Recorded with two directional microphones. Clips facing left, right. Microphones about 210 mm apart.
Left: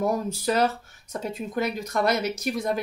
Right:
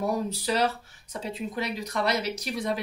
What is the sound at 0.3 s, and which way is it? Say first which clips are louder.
Speech: left 3 dB; 45° left (ahead or behind).